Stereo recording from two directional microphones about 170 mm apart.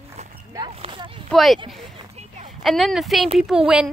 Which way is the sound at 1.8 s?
35° right (ahead or behind).